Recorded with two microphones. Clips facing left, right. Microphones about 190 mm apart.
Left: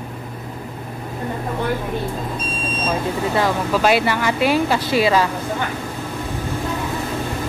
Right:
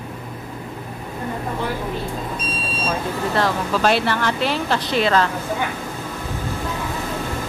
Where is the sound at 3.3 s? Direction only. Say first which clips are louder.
Left 1 dB; 5° left (ahead or behind).